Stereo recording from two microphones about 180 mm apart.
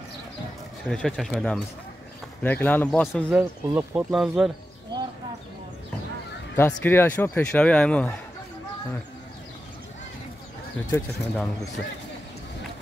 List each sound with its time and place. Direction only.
0.8 s speech: centre (ahead or behind)
3.3 s speech: 10° right (ahead or behind)
4.9 s a sound: 25° right (ahead or behind)
6.5 s speech: 10° left (ahead or behind)
10.9 s speech: 10° left (ahead or behind)